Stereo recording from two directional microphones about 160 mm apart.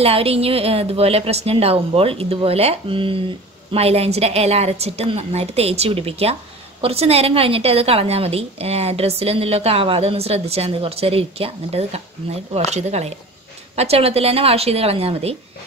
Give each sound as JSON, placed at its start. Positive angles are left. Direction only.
{"t": 0.0, "sound": "a woman's voice", "side_deg": -40}